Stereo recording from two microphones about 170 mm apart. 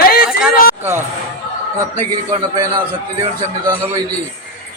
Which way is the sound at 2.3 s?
25° right (ahead or behind).